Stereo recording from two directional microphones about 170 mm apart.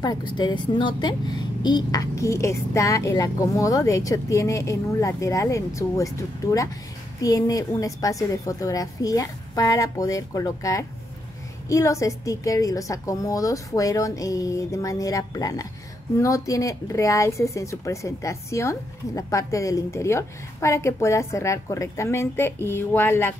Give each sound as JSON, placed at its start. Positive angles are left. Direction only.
{"t": 0.0, "sound": "a woman's voice", "side_deg": 25}